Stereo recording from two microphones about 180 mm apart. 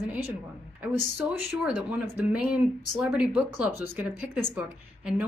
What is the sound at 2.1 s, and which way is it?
A woman's voice, 5° right (ahead or behind).